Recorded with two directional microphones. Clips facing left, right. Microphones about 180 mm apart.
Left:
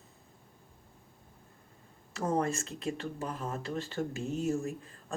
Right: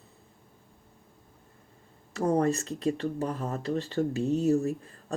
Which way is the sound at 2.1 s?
40° right (ahead or behind).